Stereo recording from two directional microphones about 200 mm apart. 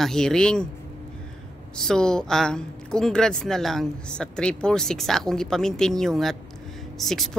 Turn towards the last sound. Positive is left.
turn(degrees=0)  # may be behind; listen again after turning